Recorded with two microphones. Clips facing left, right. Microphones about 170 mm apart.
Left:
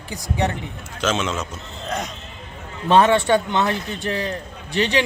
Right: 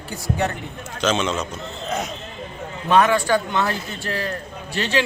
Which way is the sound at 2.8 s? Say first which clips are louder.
Left 2 dB; 30° left (ahead or behind).